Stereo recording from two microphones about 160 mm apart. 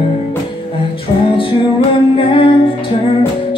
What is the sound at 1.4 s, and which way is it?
Music, 35° left (ahead or behind).